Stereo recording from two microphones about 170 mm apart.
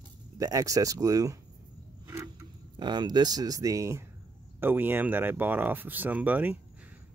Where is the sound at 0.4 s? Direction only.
20° right (ahead or behind).